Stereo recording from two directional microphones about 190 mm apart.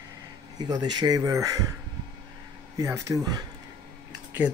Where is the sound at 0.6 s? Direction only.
20° right (ahead or behind).